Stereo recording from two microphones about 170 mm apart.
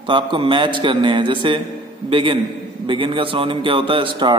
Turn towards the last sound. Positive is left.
turn(degrees=-30)  # may be behind; listen again after turning